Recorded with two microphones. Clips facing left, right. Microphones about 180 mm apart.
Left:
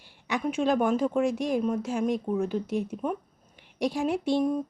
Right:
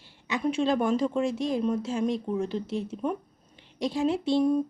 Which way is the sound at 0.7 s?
10° left (ahead or behind).